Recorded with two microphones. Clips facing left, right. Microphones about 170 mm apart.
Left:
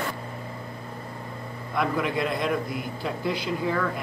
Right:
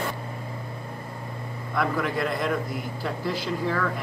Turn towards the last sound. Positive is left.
turn(degrees=5)  # may be behind; listen again after turning